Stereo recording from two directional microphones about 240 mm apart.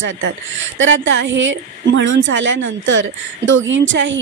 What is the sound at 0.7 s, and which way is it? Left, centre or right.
Speech, right.